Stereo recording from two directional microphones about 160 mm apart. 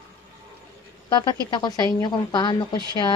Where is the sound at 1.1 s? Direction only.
30° left (ahead or behind).